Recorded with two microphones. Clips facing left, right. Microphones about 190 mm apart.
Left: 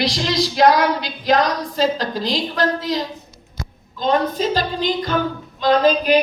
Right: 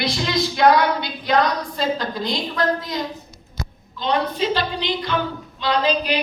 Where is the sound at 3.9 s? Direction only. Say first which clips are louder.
Left 4 dB; 45° left (ahead or behind).